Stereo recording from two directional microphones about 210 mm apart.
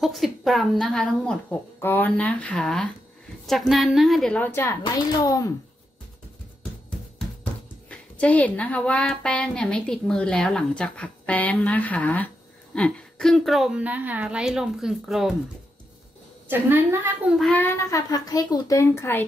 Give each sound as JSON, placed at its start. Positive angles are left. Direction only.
{"t": 0.0, "sound": "a woman's voice", "side_deg": 0}
{"t": 7.9, "sound": "a woman's voice", "side_deg": 5}
{"t": 16.4, "sound": "a woman's voice", "side_deg": -10}
{"t": 17.5, "sound": "speech", "side_deg": 10}